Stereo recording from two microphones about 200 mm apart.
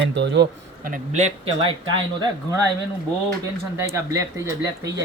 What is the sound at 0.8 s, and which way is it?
Speech, 40° right (ahead or behind).